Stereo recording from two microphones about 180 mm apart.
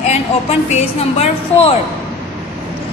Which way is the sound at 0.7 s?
35° left (ahead or behind).